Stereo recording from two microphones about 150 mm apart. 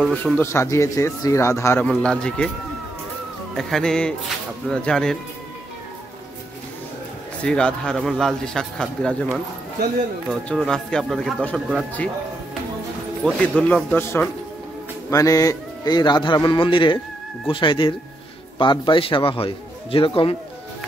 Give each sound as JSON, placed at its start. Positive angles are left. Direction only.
{"t": 0.1, "sound": "a man's voice", "side_deg": 15}
{"t": 1.9, "sound": "a man's voice", "side_deg": 5}
{"t": 3.5, "sound": "a man's voice", "side_deg": 5}
{"t": 7.4, "sound": "a man's voice", "side_deg": 5}
{"t": 10.5, "sound": "a man's voice", "side_deg": 5}
{"t": 13.2, "sound": "a man's voice", "side_deg": 5}